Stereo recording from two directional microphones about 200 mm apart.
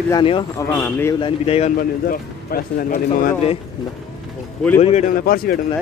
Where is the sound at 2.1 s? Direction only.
45° left (ahead or behind).